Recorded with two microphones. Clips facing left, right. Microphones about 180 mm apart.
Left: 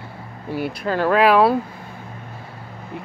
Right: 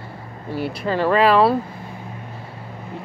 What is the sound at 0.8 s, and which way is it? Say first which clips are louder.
Speech: even; centre (ahead or behind).